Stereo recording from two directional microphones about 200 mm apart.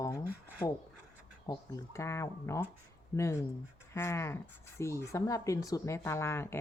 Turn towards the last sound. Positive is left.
turn(degrees=10)  # may be behind; listen again after turning